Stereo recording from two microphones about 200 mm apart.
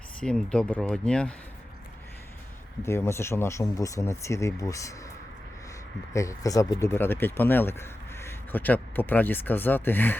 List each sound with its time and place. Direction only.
0.2 s speech: 5° left (ahead or behind)
2.8 s speech: 15° left (ahead or behind)
6.1 s speech: 15° left (ahead or behind)